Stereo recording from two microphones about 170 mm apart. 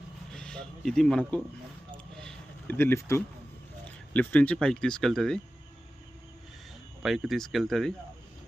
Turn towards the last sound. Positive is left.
turn(degrees=0)  # may be behind; listen again after turning